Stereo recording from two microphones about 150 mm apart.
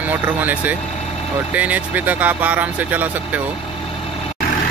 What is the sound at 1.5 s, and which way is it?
Speech, 10° right (ahead or behind).